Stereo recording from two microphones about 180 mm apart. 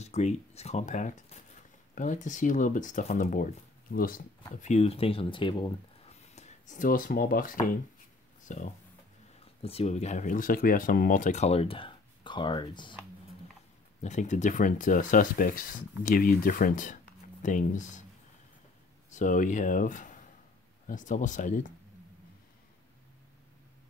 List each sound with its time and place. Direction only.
0.0 s speech: 40° left (ahead or behind)
4.6 s speech: 40° left (ahead or behind)
9.4 s speech: 35° left (ahead or behind)
14.0 s speech: 40° left (ahead or behind)
19.1 s speech: 45° left (ahead or behind)